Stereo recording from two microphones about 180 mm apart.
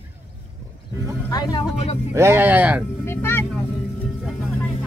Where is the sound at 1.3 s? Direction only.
25° left (ahead or behind).